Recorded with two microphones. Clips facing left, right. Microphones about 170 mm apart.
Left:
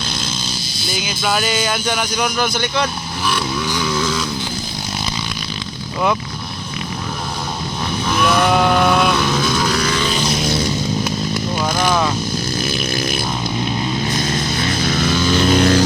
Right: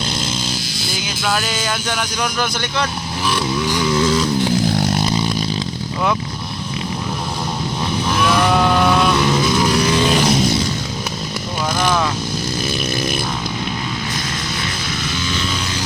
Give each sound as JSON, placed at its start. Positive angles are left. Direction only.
{"t": 1.0, "sound": "speech", "side_deg": 10}
{"t": 1.6, "sound": "speech", "side_deg": 0}
{"t": 3.8, "sound": "vehicle", "side_deg": -25}
{"t": 8.1, "sound": "vehicle", "side_deg": 0}
{"t": 9.3, "sound": "vehicle", "side_deg": -15}
{"t": 11.9, "sound": "vehicle", "side_deg": 10}
{"t": 14.6, "sound": "music", "side_deg": 45}